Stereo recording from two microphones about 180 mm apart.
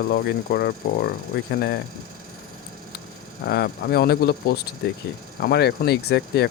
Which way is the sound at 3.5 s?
60° left (ahead or behind).